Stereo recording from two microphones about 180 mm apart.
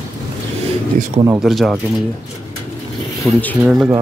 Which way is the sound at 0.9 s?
45° right (ahead or behind).